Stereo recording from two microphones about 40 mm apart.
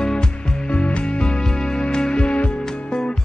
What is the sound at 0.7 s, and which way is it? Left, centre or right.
Music, left.